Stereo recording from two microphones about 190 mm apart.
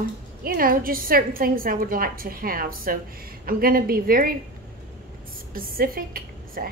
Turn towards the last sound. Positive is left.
turn(degrees=-50)  # may be behind; listen again after turning